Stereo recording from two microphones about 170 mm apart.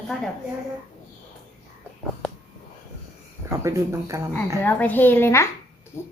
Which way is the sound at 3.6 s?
20° right (ahead or behind).